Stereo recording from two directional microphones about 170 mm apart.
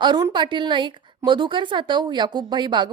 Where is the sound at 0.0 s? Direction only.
25° right (ahead or behind).